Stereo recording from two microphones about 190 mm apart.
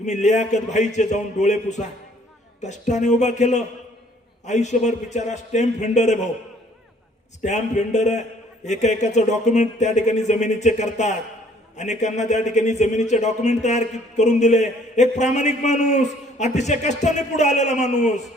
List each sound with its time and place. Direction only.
0.0 s a man's voice: 40° left (ahead or behind)
7.4 s a man's voice: 40° left (ahead or behind)